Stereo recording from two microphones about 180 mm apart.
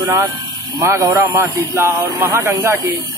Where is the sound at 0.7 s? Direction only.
15° right (ahead or behind).